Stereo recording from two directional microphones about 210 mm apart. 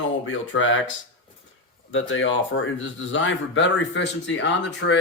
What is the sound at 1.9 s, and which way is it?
Speech, 65° left (ahead or behind).